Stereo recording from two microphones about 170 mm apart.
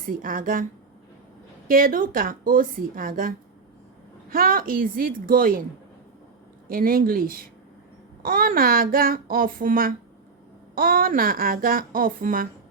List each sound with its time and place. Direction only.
0.0 s a woman's voice: 55° right (ahead or behind)
1.6 s speech: 55° right (ahead or behind)
6.7 s speech: 55° right (ahead or behind)